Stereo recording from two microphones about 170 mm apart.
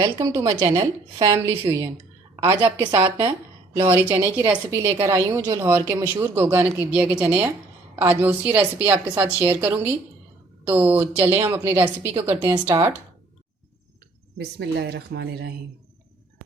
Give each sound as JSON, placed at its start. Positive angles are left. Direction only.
{"t": 0.0, "sound": "a woman's voice", "side_deg": -20}
{"t": 4.4, "sound": "a woman's voice", "side_deg": -15}
{"t": 5.6, "sound": "a woman's voice", "side_deg": -10}
{"t": 14.3, "sound": "speech", "side_deg": -80}